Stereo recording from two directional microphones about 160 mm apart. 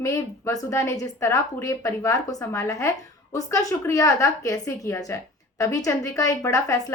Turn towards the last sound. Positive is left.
turn(degrees=20)  # may be behind; listen again after turning